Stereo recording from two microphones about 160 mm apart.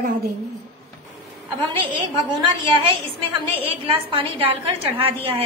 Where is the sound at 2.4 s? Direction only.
35° right (ahead or behind).